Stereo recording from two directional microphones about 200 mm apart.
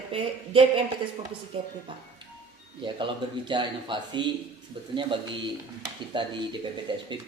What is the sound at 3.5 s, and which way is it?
Speech, 25° right (ahead or behind).